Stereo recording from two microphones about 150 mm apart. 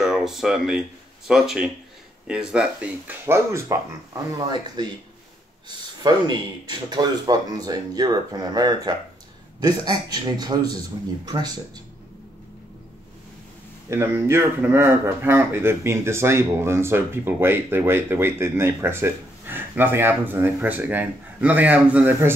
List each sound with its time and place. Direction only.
0.0 s speech: centre (ahead or behind); by 11.5 s 25° right (ahead or behind)
13.8 s speech: 15° right (ahead or behind)